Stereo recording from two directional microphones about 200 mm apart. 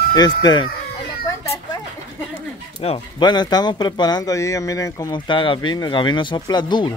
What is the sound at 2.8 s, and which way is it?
Speech, 25° left (ahead or behind).